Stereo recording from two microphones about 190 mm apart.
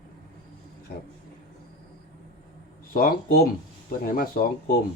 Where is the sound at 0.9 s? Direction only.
55° left (ahead or behind).